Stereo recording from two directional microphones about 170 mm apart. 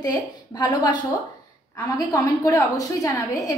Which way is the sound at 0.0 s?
25° left (ahead or behind).